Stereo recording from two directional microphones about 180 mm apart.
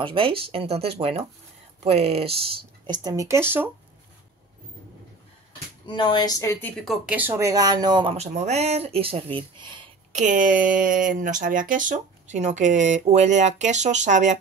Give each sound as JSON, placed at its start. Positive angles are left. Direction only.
{"t": 0.0, "sound": "speech", "side_deg": -30}
{"t": 2.9, "sound": "speech", "side_deg": -20}
{"t": 5.9, "sound": "a woman's voice", "side_deg": 25}
{"t": 6.7, "sound": "speech", "side_deg": 0}
{"t": 10.1, "sound": "speech", "side_deg": -45}